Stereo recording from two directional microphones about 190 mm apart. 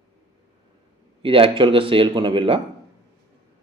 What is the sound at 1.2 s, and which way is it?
Speech, 30° right (ahead or behind).